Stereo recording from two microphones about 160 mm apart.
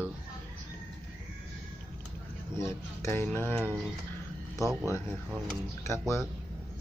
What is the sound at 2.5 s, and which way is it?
Speech, 15° left (ahead or behind).